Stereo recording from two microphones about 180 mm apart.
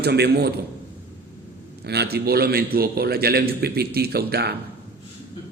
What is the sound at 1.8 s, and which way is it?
A man's voice, 65° right (ahead or behind).